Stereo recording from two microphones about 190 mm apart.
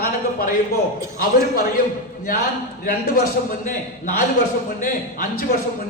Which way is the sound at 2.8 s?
45° left (ahead or behind).